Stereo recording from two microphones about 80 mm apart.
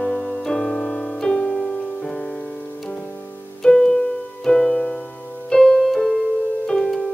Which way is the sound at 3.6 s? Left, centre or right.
Centre.